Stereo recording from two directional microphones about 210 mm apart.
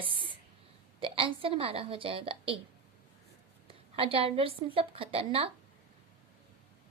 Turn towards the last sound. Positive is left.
turn(degrees=-25)  # may be behind; listen again after turning